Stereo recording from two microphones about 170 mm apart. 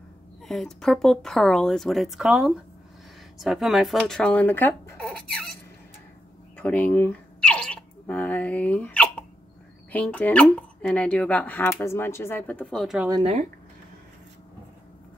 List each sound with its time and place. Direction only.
0.5 s speech: 5° left (ahead or behind)
6.5 s a sound: 10° left (ahead or behind)
9.9 s speech: 10° left (ahead or behind)